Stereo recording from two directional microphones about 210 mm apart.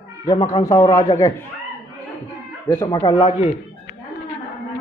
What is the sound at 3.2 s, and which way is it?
Speech, 30° left (ahead or behind).